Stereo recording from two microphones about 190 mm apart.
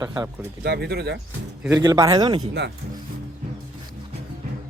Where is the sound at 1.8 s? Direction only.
20° right (ahead or behind).